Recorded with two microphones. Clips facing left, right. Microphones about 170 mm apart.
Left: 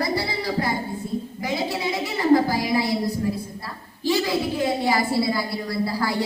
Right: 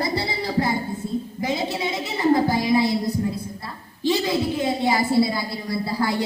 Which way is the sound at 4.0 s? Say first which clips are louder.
Right 1 dB; 25° right (ahead or behind).